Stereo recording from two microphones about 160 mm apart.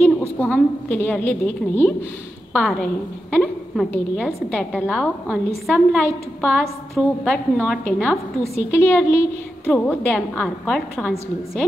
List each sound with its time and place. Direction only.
0.4 s a woman's voice: 10° left (ahead or behind)